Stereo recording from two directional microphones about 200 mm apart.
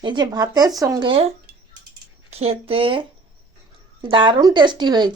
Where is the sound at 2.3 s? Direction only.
30° right (ahead or behind).